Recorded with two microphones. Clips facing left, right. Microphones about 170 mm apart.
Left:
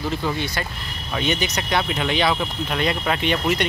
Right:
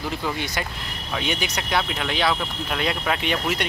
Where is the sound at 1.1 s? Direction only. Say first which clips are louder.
Left 3 dB; 5° right (ahead or behind).